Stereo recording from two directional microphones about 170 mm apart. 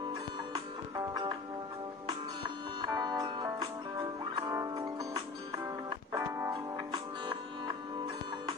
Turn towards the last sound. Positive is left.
turn(degrees=-25)  # may be behind; listen again after turning